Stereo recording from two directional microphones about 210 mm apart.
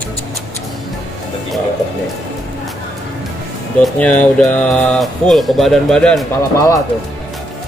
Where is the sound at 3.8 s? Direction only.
5° left (ahead or behind).